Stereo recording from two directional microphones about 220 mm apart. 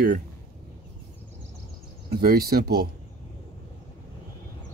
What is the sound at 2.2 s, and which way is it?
Speech, 45° right (ahead or behind).